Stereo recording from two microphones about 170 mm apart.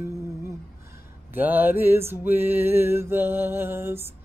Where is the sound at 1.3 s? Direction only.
10° right (ahead or behind).